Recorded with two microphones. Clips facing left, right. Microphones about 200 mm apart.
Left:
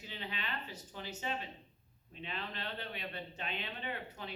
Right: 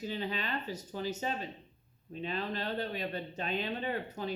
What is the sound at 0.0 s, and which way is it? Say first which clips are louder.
A man's voice: right 9 dB; 40° right (ahead or behind).